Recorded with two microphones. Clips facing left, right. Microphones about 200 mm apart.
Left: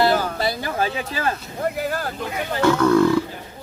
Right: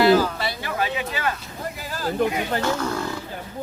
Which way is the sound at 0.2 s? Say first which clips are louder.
Even; 40° left (ahead or behind).